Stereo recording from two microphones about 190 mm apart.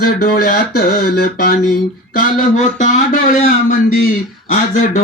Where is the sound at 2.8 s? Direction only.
40° left (ahead or behind).